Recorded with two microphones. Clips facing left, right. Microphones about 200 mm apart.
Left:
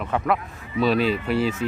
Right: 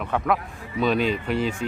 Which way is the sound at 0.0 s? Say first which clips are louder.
Even; centre (ahead or behind).